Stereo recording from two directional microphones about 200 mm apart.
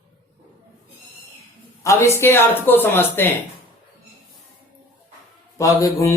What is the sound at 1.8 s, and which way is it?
Speech, 15° left (ahead or behind).